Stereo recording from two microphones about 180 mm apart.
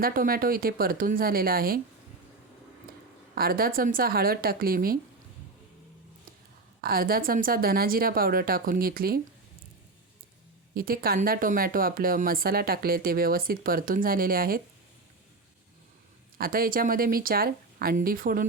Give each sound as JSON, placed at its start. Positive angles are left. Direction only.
{"t": 0.0, "sound": "speech", "side_deg": -50}
{"t": 3.3, "sound": "speech", "side_deg": -55}
{"t": 6.8, "sound": "speech", "side_deg": -55}
{"t": 10.8, "sound": "speech", "side_deg": -55}
{"t": 16.4, "sound": "speech", "side_deg": -55}